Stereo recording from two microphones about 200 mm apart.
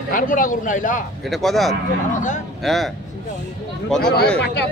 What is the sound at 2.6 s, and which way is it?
Speech, centre (ahead or behind).